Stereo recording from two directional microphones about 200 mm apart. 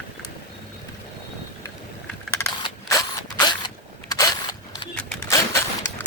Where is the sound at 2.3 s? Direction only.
15° left (ahead or behind).